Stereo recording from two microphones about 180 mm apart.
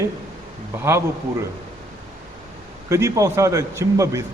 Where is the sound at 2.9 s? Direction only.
15° right (ahead or behind).